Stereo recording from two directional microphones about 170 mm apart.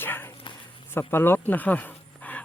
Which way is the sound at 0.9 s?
15° left (ahead or behind).